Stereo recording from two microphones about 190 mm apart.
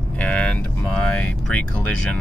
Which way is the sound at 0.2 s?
5° left (ahead or behind).